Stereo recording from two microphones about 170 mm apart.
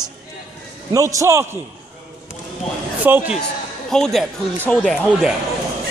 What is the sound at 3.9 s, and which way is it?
Speech, centre (ahead or behind).